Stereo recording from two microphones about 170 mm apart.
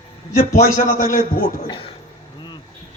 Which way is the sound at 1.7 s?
30° left (ahead or behind).